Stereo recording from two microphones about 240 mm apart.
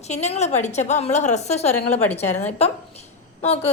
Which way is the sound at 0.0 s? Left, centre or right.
Left.